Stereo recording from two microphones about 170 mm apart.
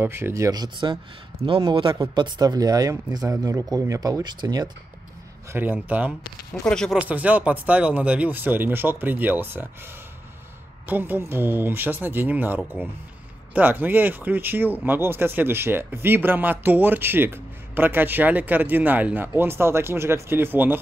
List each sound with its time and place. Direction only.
0.0 s speech: 15° right (ahead or behind)
5.5 s speech: 10° right (ahead or behind)
6.6 s speech: 5° left (ahead or behind)
7.0 s speech: 10° right (ahead or behind)
10.9 s speech: 10° right (ahead or behind)